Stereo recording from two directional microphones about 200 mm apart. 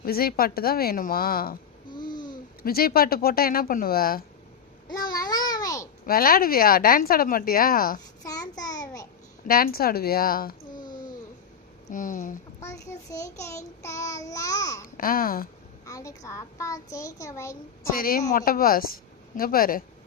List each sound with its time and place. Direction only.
0.0 s a woman's voice: 50° left (ahead or behind)
1.9 s babbling: 20° left (ahead or behind)
2.6 s a woman's voice: 50° left (ahead or behind)
4.9 s babbling: 20° left (ahead or behind)
6.1 s a woman's voice: 45° left (ahead or behind)
8.2 s child singing: 20° left (ahead or behind)
9.5 s a woman's voice: 45° left (ahead or behind)
10.8 s a sound: 20° left (ahead or behind)
11.9 s speech: 40° left (ahead or behind)
12.5 s a child's voice: 15° left (ahead or behind)
14.9 s a woman's voice: 45° left (ahead or behind)
15.9 s a child's voice: 15° left (ahead or behind)
17.9 s a woman's voice: 45° left (ahead or behind)